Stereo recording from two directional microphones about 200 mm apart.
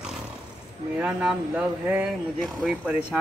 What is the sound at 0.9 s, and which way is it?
Speech, 5° right (ahead or behind).